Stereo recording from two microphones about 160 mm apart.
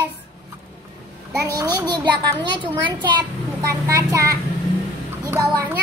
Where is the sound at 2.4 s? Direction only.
30° right (ahead or behind).